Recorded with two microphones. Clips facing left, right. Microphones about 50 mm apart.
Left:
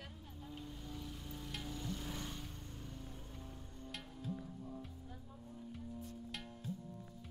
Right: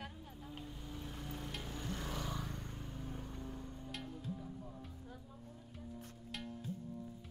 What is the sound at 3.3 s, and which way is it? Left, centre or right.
Music, right.